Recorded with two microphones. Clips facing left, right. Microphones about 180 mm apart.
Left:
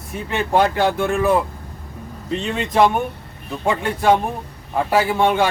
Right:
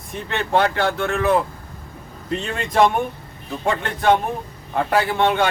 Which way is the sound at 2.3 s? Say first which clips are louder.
Left 1 dB; centre (ahead or behind).